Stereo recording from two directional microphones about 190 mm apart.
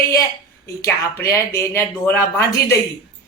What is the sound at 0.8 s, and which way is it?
Speech, 15° left (ahead or behind).